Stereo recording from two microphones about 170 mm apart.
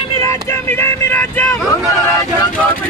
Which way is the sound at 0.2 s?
15° left (ahead or behind).